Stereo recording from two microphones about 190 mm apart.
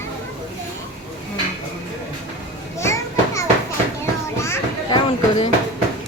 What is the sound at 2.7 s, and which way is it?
Children playing, 15° left (ahead or behind).